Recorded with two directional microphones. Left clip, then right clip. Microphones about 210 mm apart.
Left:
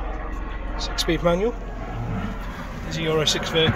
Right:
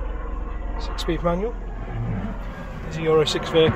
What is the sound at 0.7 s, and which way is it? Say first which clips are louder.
Speech: left 3 dB; 10° left (ahead or behind).